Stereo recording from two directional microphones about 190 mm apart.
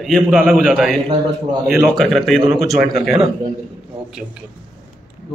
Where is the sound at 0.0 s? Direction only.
Centre (ahead or behind).